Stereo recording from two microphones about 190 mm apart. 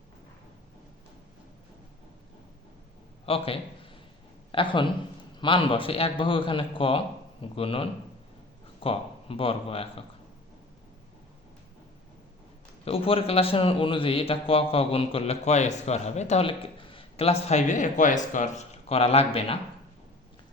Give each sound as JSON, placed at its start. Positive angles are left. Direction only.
{"t": 3.2, "sound": "a man's voice", "side_deg": 30}
{"t": 12.8, "sound": "a man's voice", "side_deg": 30}